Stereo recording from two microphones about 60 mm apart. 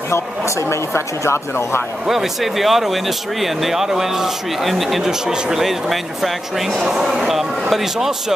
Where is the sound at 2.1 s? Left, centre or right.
Centre.